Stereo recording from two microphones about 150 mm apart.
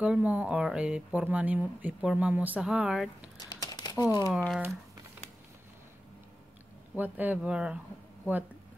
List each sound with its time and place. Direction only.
0.0 s speech: 10° right (ahead or behind)
3.3 s crumpling: 25° left (ahead or behind)
4.3 s speech: centre (ahead or behind)
7.0 s speech: 10° right (ahead or behind)